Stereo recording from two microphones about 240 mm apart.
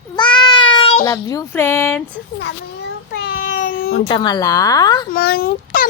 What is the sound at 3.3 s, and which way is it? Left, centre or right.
Baby cry, left.